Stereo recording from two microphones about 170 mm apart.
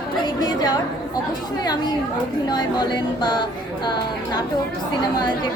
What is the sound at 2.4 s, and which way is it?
Speech, 25° left (ahead or behind).